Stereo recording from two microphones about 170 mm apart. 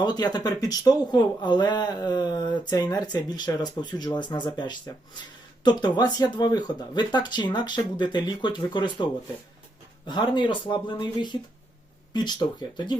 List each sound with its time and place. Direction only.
0.0 s speech: 25° left (ahead or behind)
10.1 s speech: 30° left (ahead or behind)